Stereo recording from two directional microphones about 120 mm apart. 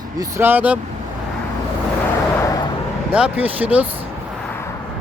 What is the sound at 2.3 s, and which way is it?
Vehicle, 25° left (ahead or behind).